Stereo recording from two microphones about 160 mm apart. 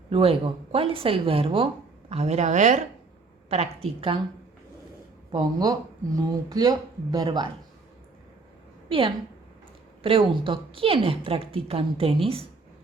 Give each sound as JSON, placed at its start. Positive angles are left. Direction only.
{"t": 0.1, "sound": "speech", "side_deg": -35}
{"t": 5.3, "sound": "speech", "side_deg": -25}
{"t": 8.9, "sound": "speech", "side_deg": -35}